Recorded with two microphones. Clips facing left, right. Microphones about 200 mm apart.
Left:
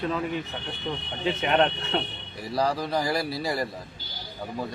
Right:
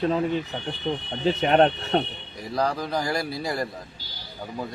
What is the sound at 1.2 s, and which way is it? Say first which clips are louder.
Speech: right 4 dB; 40° right (ahead or behind).